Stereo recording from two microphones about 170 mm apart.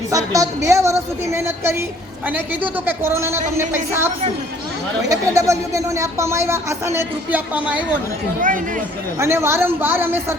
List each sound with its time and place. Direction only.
0.3 s speech: 20° right (ahead or behind)
8.4 s speech: 50° right (ahead or behind)
9.1 s speech: 15° right (ahead or behind)